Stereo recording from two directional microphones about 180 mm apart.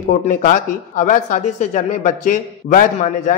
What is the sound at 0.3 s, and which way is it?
Speech, 45° left (ahead or behind).